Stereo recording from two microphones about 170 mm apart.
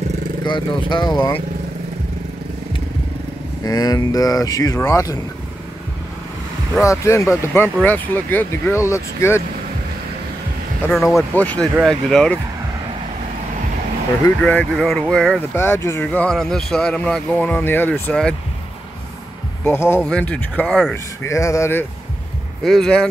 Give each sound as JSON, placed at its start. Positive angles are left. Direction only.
{"t": 0.5, "sound": "speech", "side_deg": 25}
{"t": 3.6, "sound": "speech", "side_deg": 20}
{"t": 6.8, "sound": "speech", "side_deg": 15}
{"t": 10.9, "sound": "speech", "side_deg": 0}
{"t": 14.4, "sound": "speech", "side_deg": 5}
{"t": 19.6, "sound": "speech", "side_deg": 15}
{"t": 21.2, "sound": "speech", "side_deg": 15}
{"t": 22.6, "sound": "speech", "side_deg": 5}